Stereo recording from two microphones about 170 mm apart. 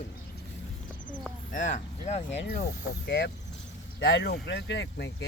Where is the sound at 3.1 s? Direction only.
80° left.